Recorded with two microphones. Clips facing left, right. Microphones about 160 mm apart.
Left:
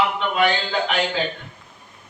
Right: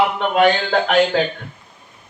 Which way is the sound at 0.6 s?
55° right (ahead or behind).